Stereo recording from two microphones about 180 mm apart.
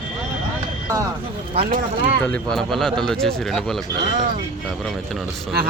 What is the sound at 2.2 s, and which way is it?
Speech, 5° left (ahead or behind).